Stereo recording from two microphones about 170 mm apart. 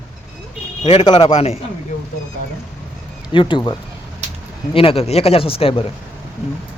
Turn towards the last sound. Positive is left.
turn(degrees=35)  # may be behind; listen again after turning